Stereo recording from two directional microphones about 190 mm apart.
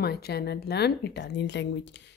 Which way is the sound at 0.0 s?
55° left (ahead or behind).